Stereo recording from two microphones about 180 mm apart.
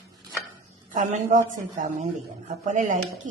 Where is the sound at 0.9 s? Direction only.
45° right (ahead or behind).